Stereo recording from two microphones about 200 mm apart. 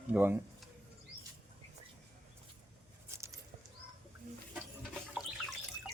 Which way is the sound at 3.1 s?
15° right (ahead or behind).